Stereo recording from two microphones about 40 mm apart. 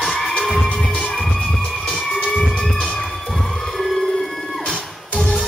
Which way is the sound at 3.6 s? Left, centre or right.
Centre.